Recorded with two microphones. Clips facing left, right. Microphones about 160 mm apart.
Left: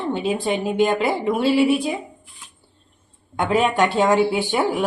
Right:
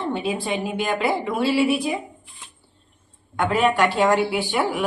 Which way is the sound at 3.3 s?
20° left (ahead or behind).